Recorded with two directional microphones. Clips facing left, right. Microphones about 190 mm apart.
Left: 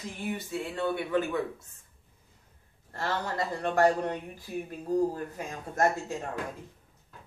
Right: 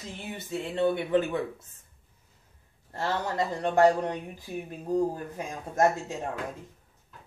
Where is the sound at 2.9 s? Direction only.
20° right (ahead or behind).